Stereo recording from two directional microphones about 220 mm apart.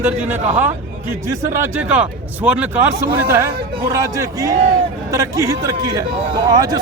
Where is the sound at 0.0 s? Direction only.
10° right (ahead or behind).